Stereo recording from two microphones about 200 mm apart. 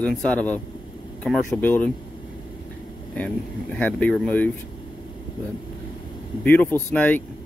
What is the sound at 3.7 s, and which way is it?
Speech, 5° left (ahead or behind).